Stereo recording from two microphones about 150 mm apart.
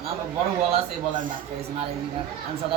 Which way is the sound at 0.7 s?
60° right (ahead or behind).